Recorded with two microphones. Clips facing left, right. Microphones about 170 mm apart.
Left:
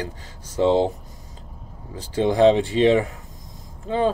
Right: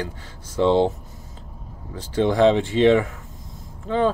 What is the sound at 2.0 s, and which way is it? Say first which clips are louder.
Speech: even; 15° left (ahead or behind).